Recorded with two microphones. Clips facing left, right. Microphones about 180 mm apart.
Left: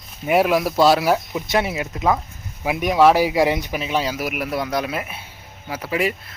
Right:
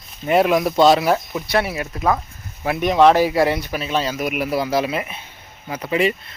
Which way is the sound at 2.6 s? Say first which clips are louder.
Right 1 dB; 10° left (ahead or behind).